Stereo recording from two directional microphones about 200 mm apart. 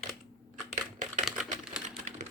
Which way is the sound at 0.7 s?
40° right (ahead or behind).